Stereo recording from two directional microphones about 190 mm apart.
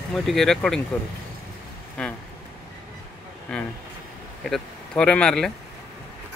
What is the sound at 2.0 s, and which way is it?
Speech, 5° left (ahead or behind).